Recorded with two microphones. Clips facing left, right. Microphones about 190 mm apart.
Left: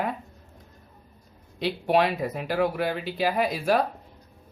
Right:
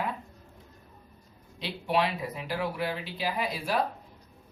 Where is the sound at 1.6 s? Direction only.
50° left (ahead or behind).